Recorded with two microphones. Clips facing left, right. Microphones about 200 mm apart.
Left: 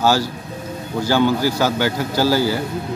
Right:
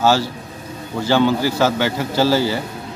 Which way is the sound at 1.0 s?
Centre (ahead or behind).